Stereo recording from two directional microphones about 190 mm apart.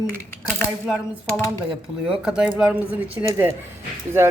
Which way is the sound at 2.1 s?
5° right (ahead or behind).